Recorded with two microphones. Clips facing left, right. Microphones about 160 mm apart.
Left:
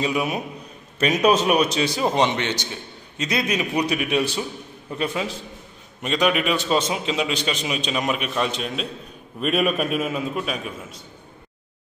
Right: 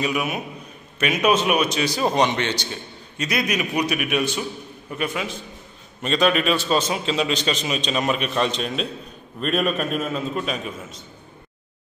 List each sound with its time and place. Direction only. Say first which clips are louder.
0.0 s a man's voice: left 1 dB; 30° left (ahead or behind)
6.0 s a man's voice: right 1 dB; 15° left (ahead or behind)